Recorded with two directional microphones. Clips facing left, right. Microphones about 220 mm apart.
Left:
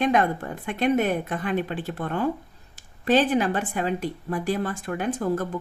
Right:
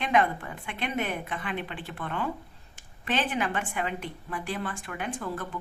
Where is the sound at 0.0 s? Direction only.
40° left (ahead or behind).